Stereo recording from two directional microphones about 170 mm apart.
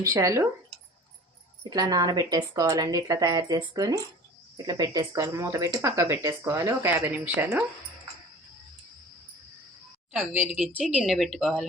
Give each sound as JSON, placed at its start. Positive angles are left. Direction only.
{"t": 0.0, "sound": "speech", "side_deg": -20}
{"t": 1.7, "sound": "speech", "side_deg": -25}
{"t": 10.1, "sound": "speech", "side_deg": -10}